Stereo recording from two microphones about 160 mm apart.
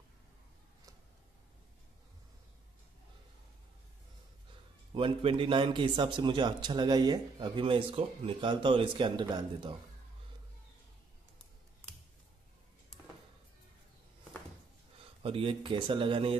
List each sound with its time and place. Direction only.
4.9 s a man's voice: 35° right (ahead or behind)
15.2 s a man's voice: 35° right (ahead or behind)